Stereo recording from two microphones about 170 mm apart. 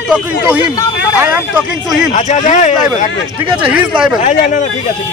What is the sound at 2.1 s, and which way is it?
Speech, 45° left (ahead or behind).